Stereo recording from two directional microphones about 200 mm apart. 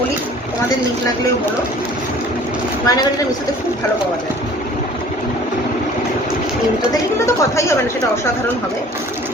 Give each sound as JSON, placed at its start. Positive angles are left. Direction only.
{"t": 2.8, "sound": "a woman's voice", "side_deg": 20}
{"t": 7.3, "sound": "speech", "side_deg": 15}